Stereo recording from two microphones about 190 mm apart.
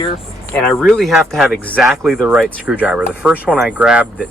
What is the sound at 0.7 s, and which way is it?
Speech, centre (ahead or behind).